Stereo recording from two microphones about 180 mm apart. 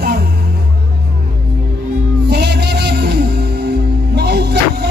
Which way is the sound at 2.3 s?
70° right (ahead or behind).